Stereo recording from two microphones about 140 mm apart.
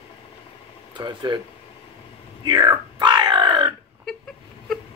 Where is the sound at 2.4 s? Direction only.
30° right (ahead or behind).